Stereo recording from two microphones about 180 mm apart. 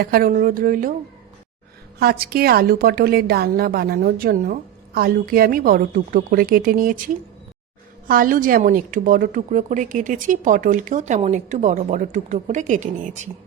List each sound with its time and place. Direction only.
0.0 s a woman's voice: 55° right (ahead or behind)
2.0 s a woman's voice: 60° right (ahead or behind)